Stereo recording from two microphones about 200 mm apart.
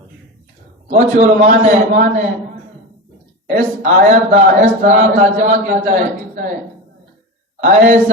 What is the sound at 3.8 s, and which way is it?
A man's voice, 35° right (ahead or behind).